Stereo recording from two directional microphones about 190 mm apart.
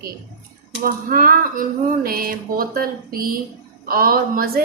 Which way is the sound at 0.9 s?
50° right (ahead or behind).